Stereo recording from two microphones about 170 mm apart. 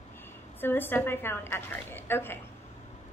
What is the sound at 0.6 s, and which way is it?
A woman's voice, 10° left (ahead or behind).